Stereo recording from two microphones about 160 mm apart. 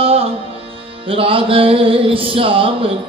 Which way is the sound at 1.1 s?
35° right (ahead or behind).